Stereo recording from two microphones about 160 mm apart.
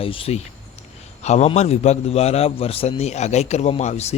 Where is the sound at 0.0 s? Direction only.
35° left (ahead or behind).